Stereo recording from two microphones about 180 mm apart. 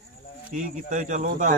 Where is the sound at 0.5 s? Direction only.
45° right (ahead or behind).